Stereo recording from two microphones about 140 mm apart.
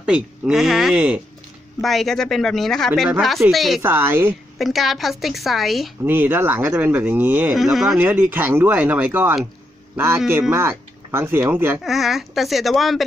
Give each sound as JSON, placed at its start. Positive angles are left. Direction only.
{"t": 0.0, "sound": "a woman's voice", "side_deg": -5}
{"t": 3.8, "sound": "speech", "side_deg": -15}
{"t": 4.6, "sound": "a woman's voice", "side_deg": 0}
{"t": 6.0, "sound": "speech", "side_deg": -15}
{"t": 7.5, "sound": "a woman's voice", "side_deg": 0}
{"t": 8.0, "sound": "speech", "side_deg": -15}
{"t": 11.8, "sound": "a woman's voice", "side_deg": 0}